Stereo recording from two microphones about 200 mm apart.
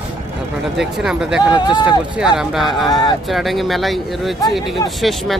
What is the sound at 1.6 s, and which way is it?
Speech, 20° left (ahead or behind).